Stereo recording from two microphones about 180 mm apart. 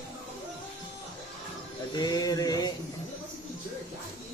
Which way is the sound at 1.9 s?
20° left (ahead or behind).